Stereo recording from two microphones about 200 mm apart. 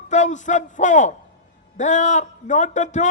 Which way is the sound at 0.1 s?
35° left (ahead or behind).